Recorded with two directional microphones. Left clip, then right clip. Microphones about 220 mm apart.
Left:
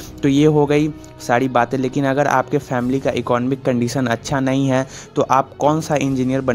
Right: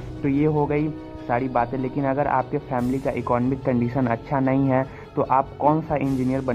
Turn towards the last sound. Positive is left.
turn(degrees=50)  # may be behind; listen again after turning